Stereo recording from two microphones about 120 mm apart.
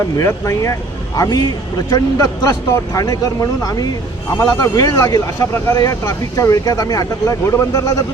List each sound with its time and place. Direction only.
0.2 s speech: 25° left (ahead or behind)